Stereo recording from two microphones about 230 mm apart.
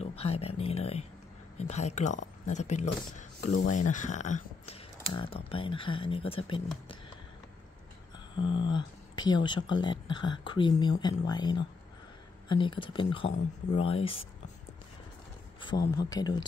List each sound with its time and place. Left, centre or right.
0.0 s speech: left
8.4 s speech: left
16.0 s speech: centre